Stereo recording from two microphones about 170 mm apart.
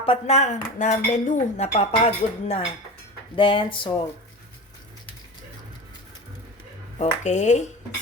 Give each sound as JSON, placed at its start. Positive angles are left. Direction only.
{"t": 0.0, "sound": "speech", "side_deg": 35}
{"t": 7.0, "sound": "speech", "side_deg": 45}